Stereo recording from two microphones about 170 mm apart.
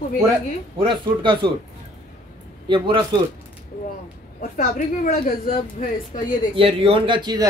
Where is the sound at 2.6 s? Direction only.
30° right (ahead or behind).